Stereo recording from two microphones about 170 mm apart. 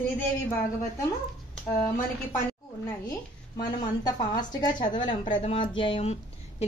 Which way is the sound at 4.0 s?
25° left (ahead or behind).